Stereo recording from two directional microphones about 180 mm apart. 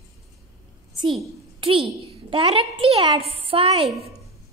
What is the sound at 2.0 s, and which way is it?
A child's voice, 30° right (ahead or behind).